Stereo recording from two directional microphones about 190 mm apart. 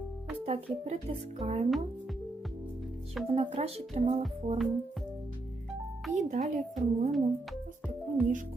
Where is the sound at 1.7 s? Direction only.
Centre (ahead or behind).